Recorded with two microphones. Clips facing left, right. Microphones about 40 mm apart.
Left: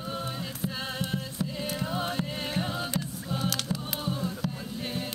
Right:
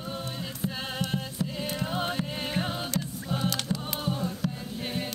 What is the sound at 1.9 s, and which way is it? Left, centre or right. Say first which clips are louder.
Music: right 1 dB; right.